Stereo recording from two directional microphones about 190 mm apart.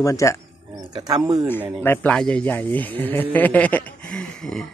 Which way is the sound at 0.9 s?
20° right (ahead or behind).